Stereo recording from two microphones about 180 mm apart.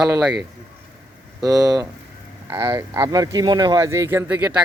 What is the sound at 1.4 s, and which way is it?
Speech, 20° right (ahead or behind).